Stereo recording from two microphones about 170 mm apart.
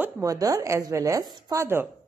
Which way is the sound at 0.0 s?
20° right (ahead or behind).